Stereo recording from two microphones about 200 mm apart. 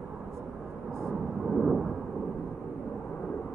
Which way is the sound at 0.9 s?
Centre (ahead or behind).